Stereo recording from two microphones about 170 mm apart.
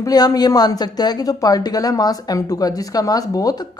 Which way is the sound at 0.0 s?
20° left (ahead or behind).